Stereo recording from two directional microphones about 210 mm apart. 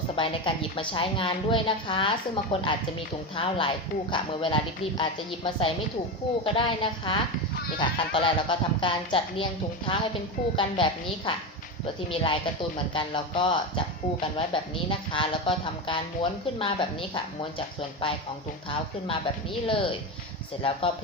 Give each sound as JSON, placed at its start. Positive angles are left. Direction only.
{"t": 0.2, "sound": "a woman's voice", "side_deg": 25}
{"t": 12.0, "sound": "a woman's voice", "side_deg": 25}